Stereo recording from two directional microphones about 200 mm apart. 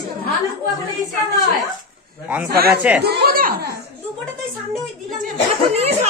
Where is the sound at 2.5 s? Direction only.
50° right (ahead or behind).